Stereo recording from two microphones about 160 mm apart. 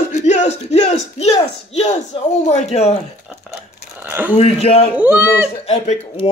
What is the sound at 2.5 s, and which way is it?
Speech, 45° left (ahead or behind).